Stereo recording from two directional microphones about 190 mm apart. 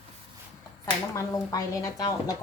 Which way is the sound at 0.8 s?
15° left (ahead or behind).